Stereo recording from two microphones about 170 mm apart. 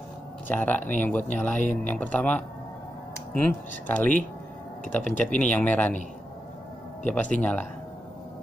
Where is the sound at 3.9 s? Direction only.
10° left (ahead or behind).